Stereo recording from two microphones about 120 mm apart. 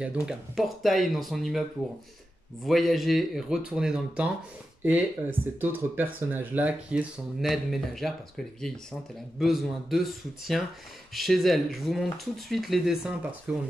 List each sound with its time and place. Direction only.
0.0 s speech: 5° right (ahead or behind)
2.6 s speech: centre (ahead or behind)
7.4 s speech: centre (ahead or behind)